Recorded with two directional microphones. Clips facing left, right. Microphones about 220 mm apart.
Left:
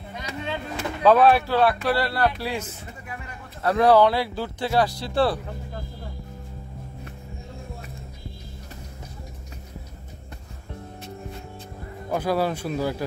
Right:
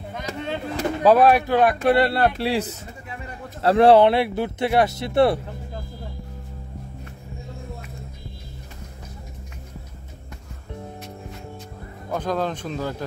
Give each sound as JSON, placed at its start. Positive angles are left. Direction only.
{"t": 0.1, "sound": "speech", "side_deg": -50}
{"t": 1.3, "sound": "speech", "side_deg": -15}
{"t": 12.1, "sound": "speech", "side_deg": 10}